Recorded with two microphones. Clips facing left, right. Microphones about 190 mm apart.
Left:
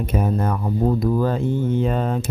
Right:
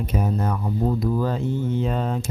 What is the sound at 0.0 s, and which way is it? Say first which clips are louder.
Speech: left 3 dB; 55° left (ahead or behind).